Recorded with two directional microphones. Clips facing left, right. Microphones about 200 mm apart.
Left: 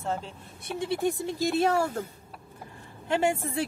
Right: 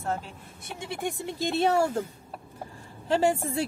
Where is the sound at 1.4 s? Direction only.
30° right (ahead or behind).